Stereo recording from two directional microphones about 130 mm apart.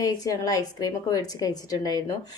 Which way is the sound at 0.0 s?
25° left (ahead or behind).